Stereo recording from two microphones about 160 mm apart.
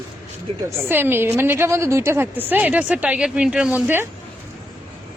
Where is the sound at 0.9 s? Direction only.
15° right (ahead or behind).